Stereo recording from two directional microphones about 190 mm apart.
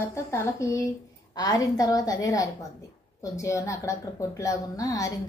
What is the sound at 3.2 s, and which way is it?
A woman's voice, 15° left (ahead or behind).